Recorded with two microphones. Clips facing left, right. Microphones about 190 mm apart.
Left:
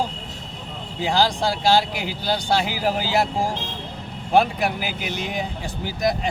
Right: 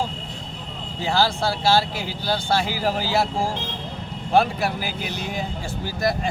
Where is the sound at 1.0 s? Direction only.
15° left (ahead or behind).